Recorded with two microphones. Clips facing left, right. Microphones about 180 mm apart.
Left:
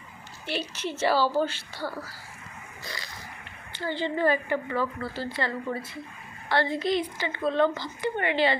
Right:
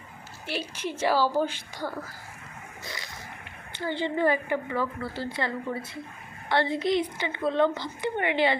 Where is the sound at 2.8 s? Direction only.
20° right (ahead or behind).